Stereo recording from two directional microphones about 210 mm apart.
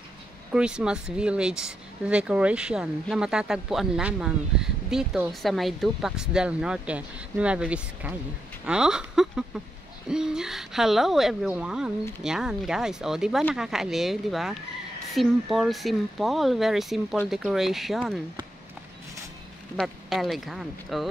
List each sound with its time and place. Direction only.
0.5 s speech: 5° right (ahead or behind)
19.8 s speech: centre (ahead or behind)